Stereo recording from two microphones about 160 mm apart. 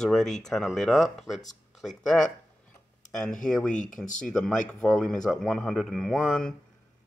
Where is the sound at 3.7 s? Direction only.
50° left (ahead or behind).